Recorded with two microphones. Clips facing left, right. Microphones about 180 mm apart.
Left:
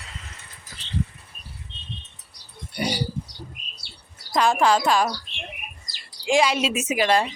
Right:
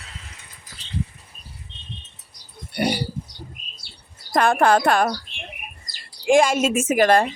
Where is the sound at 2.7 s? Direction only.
60° right (ahead or behind).